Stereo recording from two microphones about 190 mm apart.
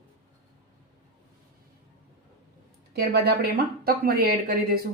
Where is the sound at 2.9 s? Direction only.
55° right (ahead or behind).